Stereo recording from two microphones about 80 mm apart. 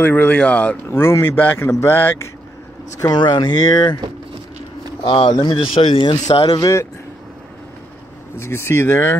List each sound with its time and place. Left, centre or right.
0.0 s speech: left
0.8 s speech: left
3.0 s speech: left
5.0 s speech: left
8.4 s speech: left